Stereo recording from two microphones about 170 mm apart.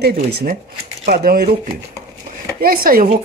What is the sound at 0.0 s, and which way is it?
Speech, 65° right (ahead or behind).